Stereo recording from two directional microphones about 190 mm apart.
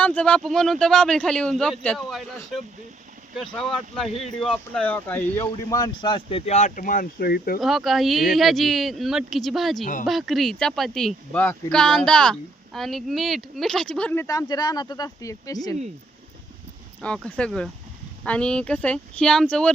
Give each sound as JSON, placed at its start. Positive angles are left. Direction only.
{"t": 0.0, "sound": "speech", "side_deg": 5}
{"t": 5.7, "sound": "speech", "side_deg": 25}
{"t": 7.6, "sound": "speech", "side_deg": 0}
{"t": 9.8, "sound": "speech", "side_deg": 45}
{"t": 10.1, "sound": "speech", "side_deg": 0}
{"t": 17.0, "sound": "speech", "side_deg": 5}